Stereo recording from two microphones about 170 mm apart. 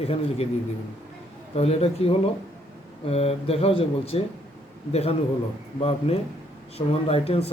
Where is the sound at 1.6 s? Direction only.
35° left (ahead or behind).